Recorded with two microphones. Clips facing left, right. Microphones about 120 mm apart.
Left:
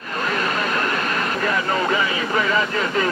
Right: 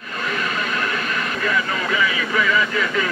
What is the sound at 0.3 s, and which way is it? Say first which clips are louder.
Speech: left 2 dB; 40° left (ahead or behind).